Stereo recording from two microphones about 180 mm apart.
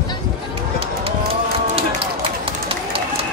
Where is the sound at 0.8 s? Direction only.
30° right (ahead or behind).